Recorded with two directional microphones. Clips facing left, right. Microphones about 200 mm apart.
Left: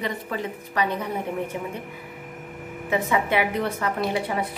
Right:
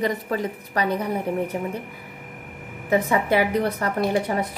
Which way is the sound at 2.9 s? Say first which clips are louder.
Right 3 dB; 40° right (ahead or behind).